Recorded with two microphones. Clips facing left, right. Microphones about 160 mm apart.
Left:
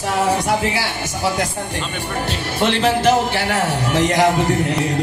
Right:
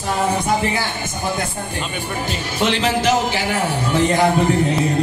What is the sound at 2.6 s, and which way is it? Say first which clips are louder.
A man's voice: left 2 dB; 60° left (ahead or behind).